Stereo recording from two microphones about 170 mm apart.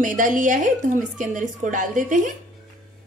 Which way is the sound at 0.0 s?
50° right (ahead or behind).